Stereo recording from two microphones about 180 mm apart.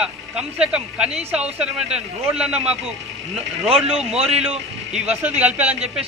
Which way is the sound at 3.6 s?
35° right (ahead or behind).